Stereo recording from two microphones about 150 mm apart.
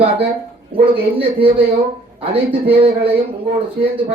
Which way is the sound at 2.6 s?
40° right (ahead or behind).